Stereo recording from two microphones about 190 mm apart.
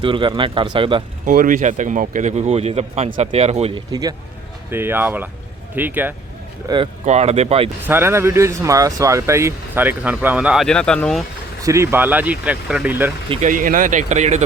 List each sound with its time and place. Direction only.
0.0 s speech: 25° right (ahead or behind)
1.2 s speech: 45° right (ahead or behind)
4.7 s speech: 10° right (ahead or behind)
7.0 s speech: 35° right (ahead or behind)
7.9 s speech: 10° right (ahead or behind); by 11.2 s 5° left (ahead or behind)
11.6 s speech: 15° right (ahead or behind)
13.3 s speech: 40° right (ahead or behind)